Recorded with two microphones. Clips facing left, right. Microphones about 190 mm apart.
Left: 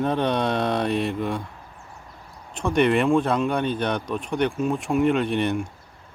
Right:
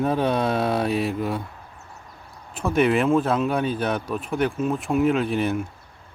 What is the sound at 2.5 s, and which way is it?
Speech, 5° right (ahead or behind).